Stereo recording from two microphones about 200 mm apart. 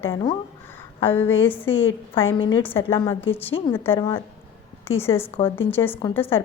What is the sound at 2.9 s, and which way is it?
A woman's voice, 10° left (ahead or behind).